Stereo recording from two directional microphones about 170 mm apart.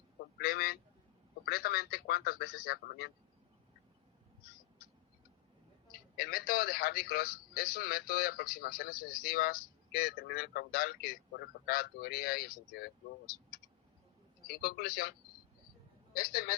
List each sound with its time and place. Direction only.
0.3 s a man's voice: 65° left (ahead or behind)
6.1 s a man's voice: 65° left (ahead or behind)
14.4 s a man's voice: 65° left (ahead or behind)
16.1 s a man's voice: 65° left (ahead or behind)